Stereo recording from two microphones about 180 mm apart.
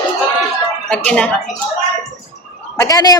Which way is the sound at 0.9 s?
5° left (ahead or behind).